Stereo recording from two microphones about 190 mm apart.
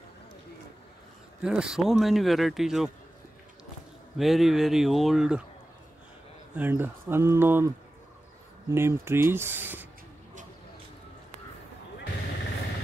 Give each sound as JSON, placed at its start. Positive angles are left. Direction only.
{"t": 1.4, "sound": "a man's voice", "side_deg": -5}
{"t": 4.2, "sound": "a man's voice", "side_deg": 0}
{"t": 6.5, "sound": "speech", "side_deg": -10}